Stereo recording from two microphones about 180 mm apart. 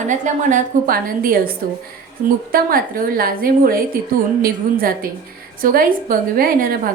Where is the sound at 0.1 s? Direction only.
50° right (ahead or behind).